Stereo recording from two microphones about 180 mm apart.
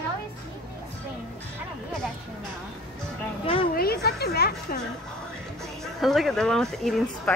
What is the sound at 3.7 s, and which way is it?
Speech, 60° left (ahead or behind).